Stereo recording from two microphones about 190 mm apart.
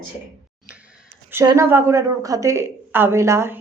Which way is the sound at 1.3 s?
15° right (ahead or behind).